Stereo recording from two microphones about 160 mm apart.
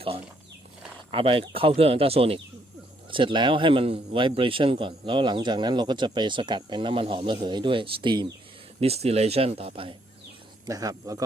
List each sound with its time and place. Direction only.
1.1 s a man's voice: 35° right (ahead or behind)
8.8 s a man's voice: 40° right (ahead or behind)
10.7 s speech: 20° right (ahead or behind)